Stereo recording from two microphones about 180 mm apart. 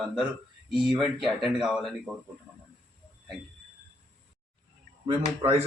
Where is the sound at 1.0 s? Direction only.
Centre (ahead or behind).